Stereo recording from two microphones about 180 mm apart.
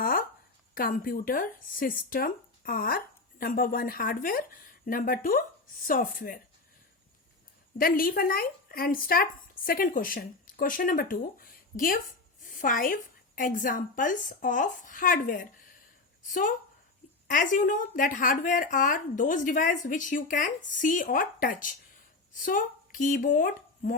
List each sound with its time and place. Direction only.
0.0 s a sound: 50° left (ahead or behind)
0.7 s speech: 50° left (ahead or behind)
7.8 s speech: 55° left (ahead or behind)
17.2 s speech: 45° left (ahead or behind)